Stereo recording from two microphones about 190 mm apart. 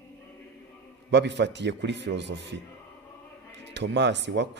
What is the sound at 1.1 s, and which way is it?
A man's voice, 65° right (ahead or behind).